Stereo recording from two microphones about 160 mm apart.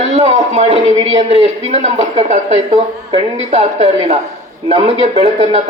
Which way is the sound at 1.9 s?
45° right (ahead or behind).